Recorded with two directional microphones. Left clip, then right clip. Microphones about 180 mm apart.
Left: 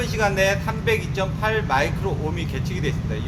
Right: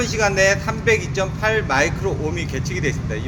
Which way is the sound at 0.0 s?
20° right (ahead or behind).